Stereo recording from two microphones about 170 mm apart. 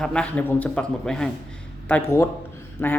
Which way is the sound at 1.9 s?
15° left (ahead or behind).